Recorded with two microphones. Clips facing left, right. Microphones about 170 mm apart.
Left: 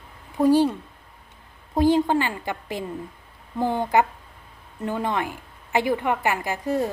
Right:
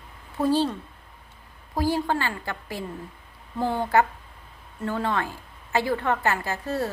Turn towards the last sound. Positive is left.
turn(degrees=15)  # may be behind; listen again after turning